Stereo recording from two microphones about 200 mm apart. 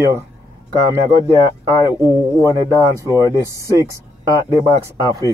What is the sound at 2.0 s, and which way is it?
Speech, 15° right (ahead or behind).